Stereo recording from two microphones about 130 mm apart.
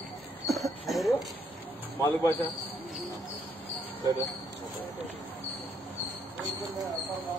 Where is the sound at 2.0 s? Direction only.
15° left (ahead or behind).